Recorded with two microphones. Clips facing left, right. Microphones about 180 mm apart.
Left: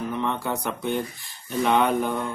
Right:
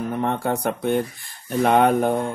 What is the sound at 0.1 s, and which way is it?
Speech, 50° right (ahead or behind).